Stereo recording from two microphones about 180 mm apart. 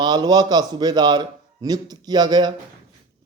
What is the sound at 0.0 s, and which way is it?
A man's voice, 25° right (ahead or behind).